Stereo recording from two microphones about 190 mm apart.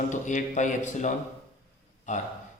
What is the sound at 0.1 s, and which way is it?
A man's voice, 40° left (ahead or behind).